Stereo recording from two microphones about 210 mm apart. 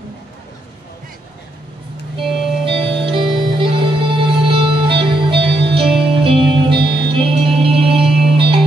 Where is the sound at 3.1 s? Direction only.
25° right (ahead or behind).